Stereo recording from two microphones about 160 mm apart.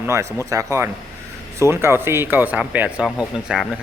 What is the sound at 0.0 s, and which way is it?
A man's voice, 20° right (ahead or behind).